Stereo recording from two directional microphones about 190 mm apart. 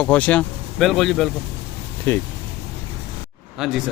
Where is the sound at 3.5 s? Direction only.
Centre (ahead or behind).